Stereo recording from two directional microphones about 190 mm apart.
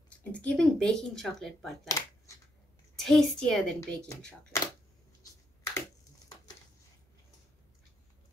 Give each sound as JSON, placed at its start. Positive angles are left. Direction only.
{"t": 0.2, "sound": "speech", "side_deg": 5}
{"t": 1.9, "sound": "scissors", "side_deg": 15}
{"t": 3.0, "sound": "speech", "side_deg": 0}
{"t": 3.8, "sound": "speech", "side_deg": 15}
{"t": 5.8, "sound": "typing", "side_deg": 20}